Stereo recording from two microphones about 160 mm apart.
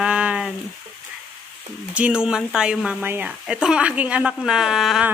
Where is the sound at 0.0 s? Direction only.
5° right (ahead or behind).